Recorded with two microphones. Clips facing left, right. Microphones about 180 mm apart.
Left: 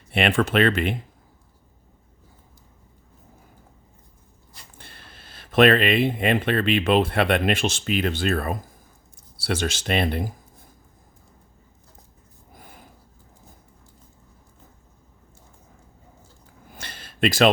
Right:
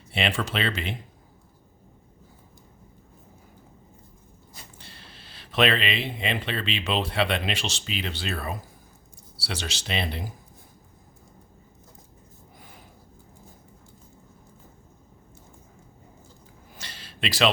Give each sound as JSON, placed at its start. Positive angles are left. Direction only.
{"t": 0.1, "sound": "speech", "side_deg": 55}
{"t": 4.8, "sound": "speech", "side_deg": 55}
{"t": 16.7, "sound": "a sound", "side_deg": 55}